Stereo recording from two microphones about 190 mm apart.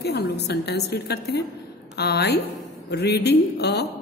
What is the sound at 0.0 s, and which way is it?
A woman's voice, 60° left (ahead or behind).